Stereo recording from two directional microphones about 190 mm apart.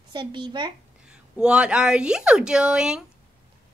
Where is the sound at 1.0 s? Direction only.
5° right (ahead or behind).